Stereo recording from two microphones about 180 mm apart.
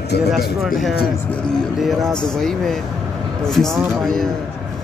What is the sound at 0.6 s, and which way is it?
Speech, centre (ahead or behind).